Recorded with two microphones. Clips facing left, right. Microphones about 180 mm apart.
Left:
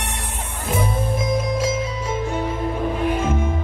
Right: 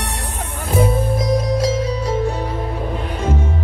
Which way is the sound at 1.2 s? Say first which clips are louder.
Right 3 dB; 35° right (ahead or behind).